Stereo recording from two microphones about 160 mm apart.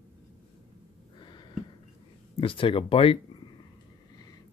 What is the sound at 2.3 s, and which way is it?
Speech, 35° left (ahead or behind).